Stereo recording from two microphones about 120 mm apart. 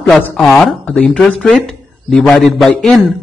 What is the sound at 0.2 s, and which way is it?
Speech, 5° left (ahead or behind).